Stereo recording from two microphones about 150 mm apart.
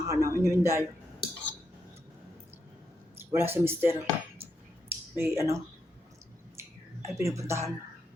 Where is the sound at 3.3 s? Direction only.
15° right (ahead or behind).